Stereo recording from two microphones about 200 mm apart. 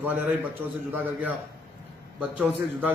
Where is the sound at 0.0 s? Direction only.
10° right (ahead or behind).